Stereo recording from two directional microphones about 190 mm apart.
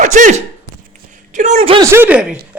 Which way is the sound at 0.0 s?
40° right (ahead or behind).